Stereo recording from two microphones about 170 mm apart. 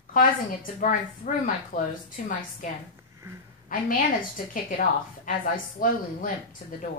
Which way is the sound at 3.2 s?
15° right (ahead or behind).